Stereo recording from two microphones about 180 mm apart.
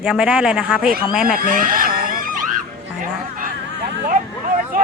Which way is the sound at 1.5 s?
50° right (ahead or behind).